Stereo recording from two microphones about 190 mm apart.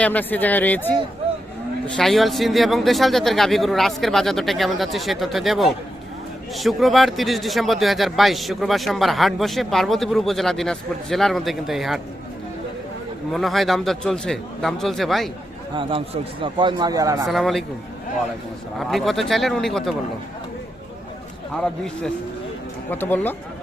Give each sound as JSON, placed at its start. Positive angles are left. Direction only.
{"t": 0.0, "sound": "speech", "side_deg": 10}
{"t": 2.0, "sound": "speech", "side_deg": 0}
{"t": 13.3, "sound": "speech", "side_deg": 0}
{"t": 15.7, "sound": "a man's voice", "side_deg": -25}
{"t": 17.2, "sound": "speech", "side_deg": 0}
{"t": 18.8, "sound": "speech", "side_deg": 0}
{"t": 22.9, "sound": "speech", "side_deg": 10}